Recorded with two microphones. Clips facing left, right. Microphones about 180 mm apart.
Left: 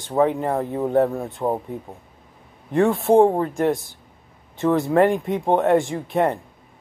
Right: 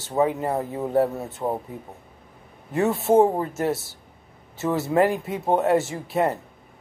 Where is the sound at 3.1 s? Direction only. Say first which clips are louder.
Left 2 dB; 20° left (ahead or behind).